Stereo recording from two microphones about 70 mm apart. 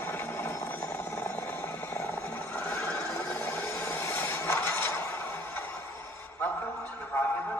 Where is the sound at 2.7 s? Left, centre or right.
Left.